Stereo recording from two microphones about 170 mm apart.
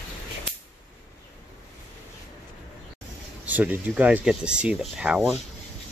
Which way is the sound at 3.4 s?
10° right (ahead or behind).